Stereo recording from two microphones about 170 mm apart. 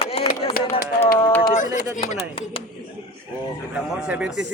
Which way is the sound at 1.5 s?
50° left (ahead or behind).